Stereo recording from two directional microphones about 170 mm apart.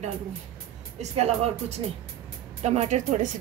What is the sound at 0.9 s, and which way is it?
A woman's voice, 40° right (ahead or behind).